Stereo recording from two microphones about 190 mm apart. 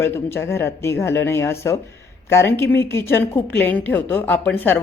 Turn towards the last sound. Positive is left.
turn(degrees=5)  # may be behind; listen again after turning